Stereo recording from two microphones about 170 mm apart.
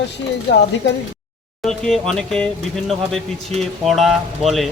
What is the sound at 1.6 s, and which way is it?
A man's voice, 5° left (ahead or behind).